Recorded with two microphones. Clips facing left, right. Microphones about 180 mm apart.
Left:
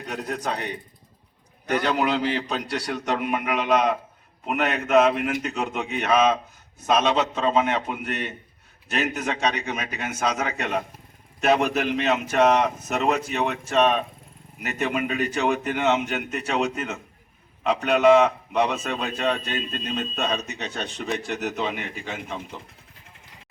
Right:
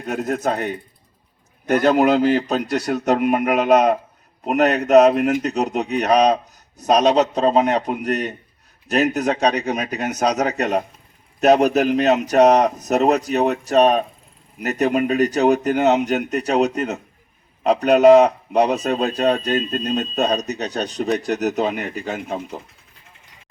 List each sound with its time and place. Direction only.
0.0 s a man's voice: 45° right (ahead or behind)